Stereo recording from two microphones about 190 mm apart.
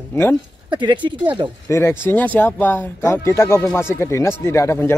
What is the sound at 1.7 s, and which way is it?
Speech, 15° left (ahead or behind).